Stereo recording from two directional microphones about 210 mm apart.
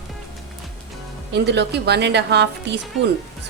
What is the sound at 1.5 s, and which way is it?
A woman's voice, 55° right (ahead or behind).